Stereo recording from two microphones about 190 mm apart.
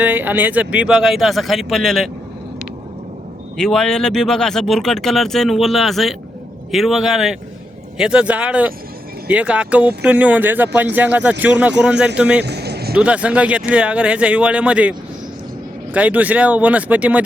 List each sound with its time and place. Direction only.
0.0 s speech: 10° right (ahead or behind)
3.6 s speech: 5° left (ahead or behind)
12.4 s a sound: 60° right (ahead or behind)
12.9 s speech: 5° right (ahead or behind)